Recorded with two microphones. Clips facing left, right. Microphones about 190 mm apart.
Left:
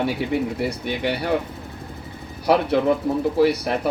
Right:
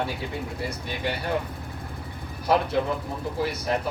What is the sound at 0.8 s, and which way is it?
Speech, 70° left (ahead or behind).